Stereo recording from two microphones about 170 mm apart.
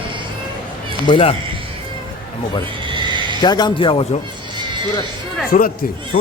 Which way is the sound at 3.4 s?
25° left (ahead or behind).